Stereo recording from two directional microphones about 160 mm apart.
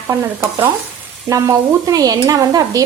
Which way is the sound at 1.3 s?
20° right (ahead or behind).